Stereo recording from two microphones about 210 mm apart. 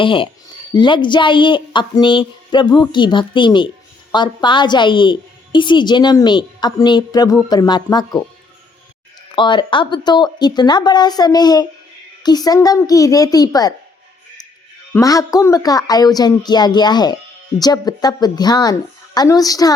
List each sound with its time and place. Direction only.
0.0 s a woman's voice: 25° left (ahead or behind)
9.3 s a woman's voice: 20° left (ahead or behind)
14.9 s a woman's voice: 15° left (ahead or behind)